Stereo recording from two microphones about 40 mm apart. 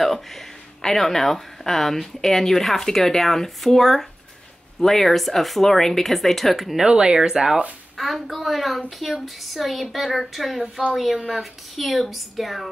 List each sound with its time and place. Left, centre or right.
0.0 s speech: centre
6.8 s speech: right
8.0 s speech: centre